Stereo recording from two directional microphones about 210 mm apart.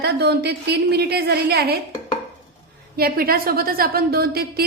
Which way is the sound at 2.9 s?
45° right (ahead or behind).